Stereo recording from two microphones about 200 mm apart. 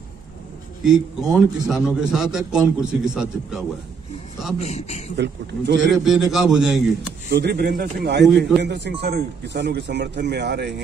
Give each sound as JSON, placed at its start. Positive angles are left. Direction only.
{"t": 0.8, "sound": "a man's voice", "side_deg": 0}
{"t": 4.6, "sound": "a man's voice", "side_deg": 35}
{"t": 5.1, "sound": "speech", "side_deg": -60}
{"t": 6.0, "sound": "a man's voice", "side_deg": 0}
{"t": 7.3, "sound": "speech", "side_deg": -50}